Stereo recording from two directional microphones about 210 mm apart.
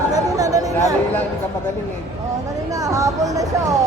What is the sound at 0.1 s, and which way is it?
Chatter, 15° right (ahead or behind).